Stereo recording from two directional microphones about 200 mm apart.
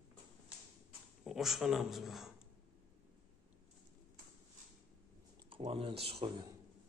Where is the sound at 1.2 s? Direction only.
Centre (ahead or behind).